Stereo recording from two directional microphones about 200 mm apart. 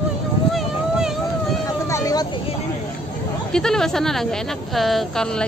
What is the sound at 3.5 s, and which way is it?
Speech, 5° left (ahead or behind).